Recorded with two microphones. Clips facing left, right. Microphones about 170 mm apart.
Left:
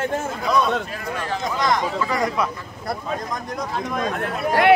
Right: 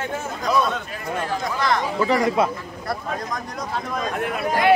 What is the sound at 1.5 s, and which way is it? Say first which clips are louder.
Speech: left 1 dB; 15° left (ahead or behind).